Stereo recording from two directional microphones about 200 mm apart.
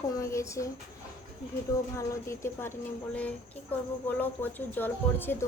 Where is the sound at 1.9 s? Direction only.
15° left (ahead or behind).